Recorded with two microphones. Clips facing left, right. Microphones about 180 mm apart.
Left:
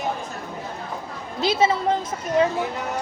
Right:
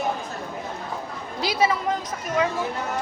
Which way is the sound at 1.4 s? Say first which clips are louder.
Left 3 dB; 25° left (ahead or behind).